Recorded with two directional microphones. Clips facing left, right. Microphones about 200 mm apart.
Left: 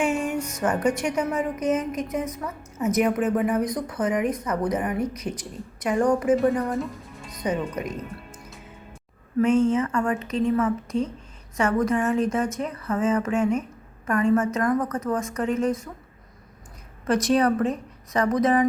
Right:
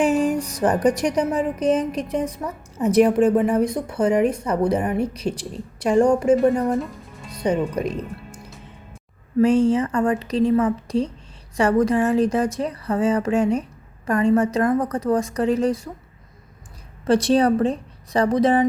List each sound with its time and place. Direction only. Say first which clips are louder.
0.0 s a woman's voice: right 5 dB; 35° right (ahead or behind)
6.7 s music: right 3 dB; centre (ahead or behind)
7.3 s speech: right 5 dB; 30° right (ahead or behind)
9.4 s speech: right 3 dB; 35° right (ahead or behind)
17.1 s a woman's voice: right 4 dB; 30° right (ahead or behind)